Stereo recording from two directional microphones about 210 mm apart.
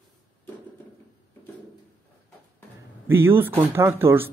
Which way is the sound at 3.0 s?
10° right (ahead or behind).